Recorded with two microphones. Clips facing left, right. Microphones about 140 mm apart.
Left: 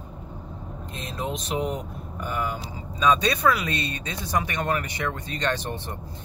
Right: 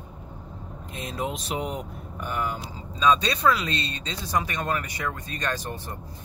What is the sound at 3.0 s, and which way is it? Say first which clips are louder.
Speech: even; 15° left (ahead or behind).